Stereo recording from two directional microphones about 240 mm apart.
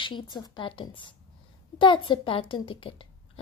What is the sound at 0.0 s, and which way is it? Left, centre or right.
A woman's voice, centre.